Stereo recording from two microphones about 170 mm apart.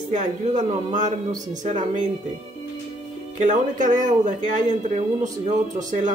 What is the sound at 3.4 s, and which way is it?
Speech, 50° right (ahead or behind).